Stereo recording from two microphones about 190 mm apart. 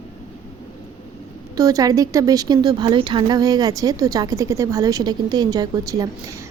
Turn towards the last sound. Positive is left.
turn(degrees=-15)  # may be behind; listen again after turning